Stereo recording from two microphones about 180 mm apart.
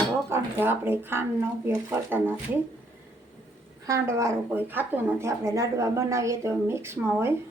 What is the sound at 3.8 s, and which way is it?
A woman's voice, 15° right (ahead or behind).